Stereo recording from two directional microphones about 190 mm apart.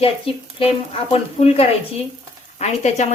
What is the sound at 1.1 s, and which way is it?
A woman's voice, 30° left (ahead or behind).